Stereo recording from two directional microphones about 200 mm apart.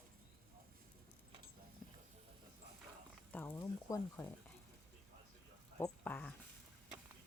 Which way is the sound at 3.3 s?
10° left (ahead or behind).